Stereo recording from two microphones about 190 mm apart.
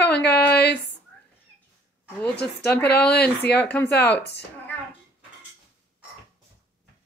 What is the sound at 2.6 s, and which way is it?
Speech, 10° left (ahead or behind).